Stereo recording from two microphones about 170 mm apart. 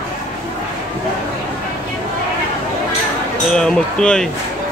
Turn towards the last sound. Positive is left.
turn(degrees=5)  # may be behind; listen again after turning